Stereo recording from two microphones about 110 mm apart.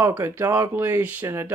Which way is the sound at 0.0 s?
25° right (ahead or behind).